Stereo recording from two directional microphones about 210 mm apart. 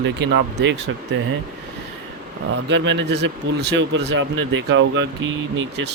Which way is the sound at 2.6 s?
55° right (ahead or behind).